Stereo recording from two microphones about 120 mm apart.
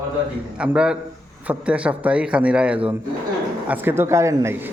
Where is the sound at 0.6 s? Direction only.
10° right (ahead or behind).